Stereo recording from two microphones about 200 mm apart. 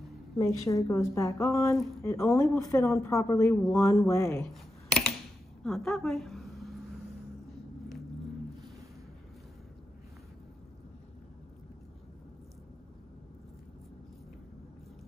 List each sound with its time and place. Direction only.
0.4 s speech: 15° left (ahead or behind)
5.6 s a woman's voice: centre (ahead or behind)